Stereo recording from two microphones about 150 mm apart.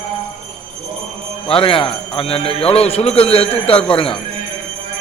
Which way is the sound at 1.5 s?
40° left (ahead or behind).